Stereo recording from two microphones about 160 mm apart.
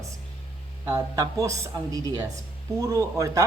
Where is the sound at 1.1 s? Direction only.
20° right (ahead or behind).